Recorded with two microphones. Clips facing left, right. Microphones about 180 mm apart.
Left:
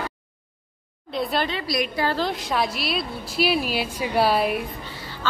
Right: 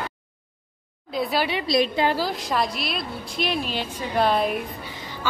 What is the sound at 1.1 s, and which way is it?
Speech, centre (ahead or behind).